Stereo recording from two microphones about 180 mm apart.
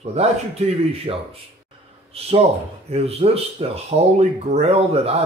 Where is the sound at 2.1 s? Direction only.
35° right (ahead or behind).